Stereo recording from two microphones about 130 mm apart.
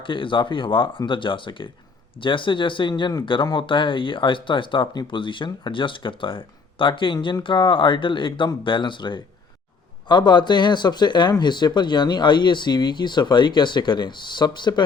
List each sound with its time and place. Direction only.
0.0 s speech: 40° left (ahead or behind)